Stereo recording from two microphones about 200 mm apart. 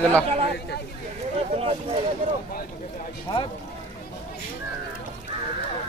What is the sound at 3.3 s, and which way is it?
Speech, 20° left (ahead or behind).